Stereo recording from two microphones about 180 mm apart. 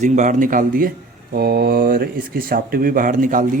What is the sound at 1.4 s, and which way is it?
Speech, 60° right (ahead or behind).